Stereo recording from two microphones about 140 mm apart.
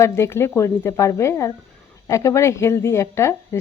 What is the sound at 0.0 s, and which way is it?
A woman's voice, 20° left (ahead or behind).